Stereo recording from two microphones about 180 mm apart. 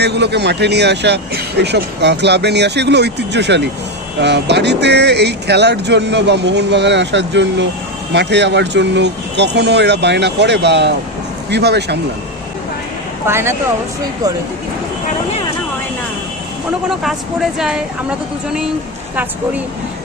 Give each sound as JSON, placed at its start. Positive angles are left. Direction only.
{"t": 0.0, "sound": "speech", "side_deg": -70}
{"t": 13.2, "sound": "speech", "side_deg": -15}
{"t": 17.0, "sound": "speech", "side_deg": 0}